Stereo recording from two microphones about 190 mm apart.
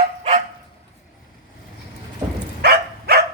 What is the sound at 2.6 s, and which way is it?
Dog, 55° right (ahead or behind).